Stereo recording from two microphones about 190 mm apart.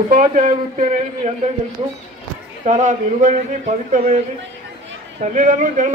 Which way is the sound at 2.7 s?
40° right (ahead or behind).